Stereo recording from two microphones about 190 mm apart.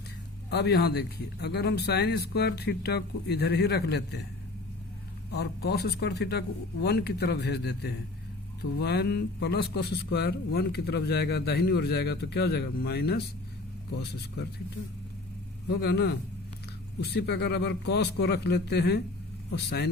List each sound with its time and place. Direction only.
0.5 s a man's voice: 60° left (ahead or behind)
5.3 s a man's voice: 60° left (ahead or behind)
15.7 s a man's voice: 60° left (ahead or behind)